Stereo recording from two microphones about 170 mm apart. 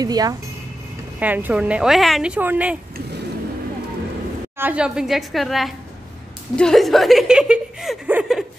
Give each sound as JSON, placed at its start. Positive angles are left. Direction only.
{"t": 0.0, "sound": "speech", "side_deg": -20}
{"t": 1.2, "sound": "speech", "side_deg": -10}
{"t": 4.6, "sound": "a woman's voice", "side_deg": -10}